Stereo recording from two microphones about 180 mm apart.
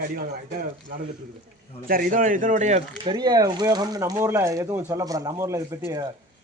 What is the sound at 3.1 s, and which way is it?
Speech, 20° right (ahead or behind).